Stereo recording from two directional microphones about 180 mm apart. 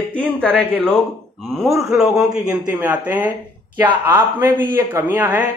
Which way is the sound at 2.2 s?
20° right (ahead or behind).